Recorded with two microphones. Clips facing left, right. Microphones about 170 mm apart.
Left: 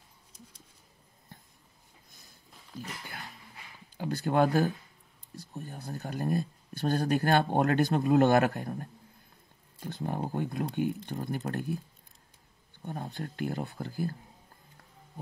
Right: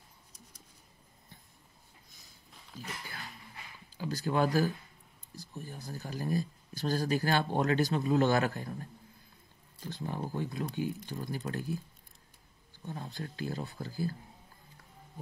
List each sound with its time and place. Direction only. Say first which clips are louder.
3.9 s speech: left 3 dB; 60° left (ahead or behind)
9.8 s speech: left 4 dB; 55° left (ahead or behind)
12.8 s speech: left 3 dB; 55° left (ahead or behind)